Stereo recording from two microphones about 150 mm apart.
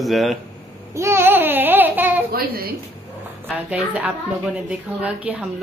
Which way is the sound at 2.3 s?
90° right.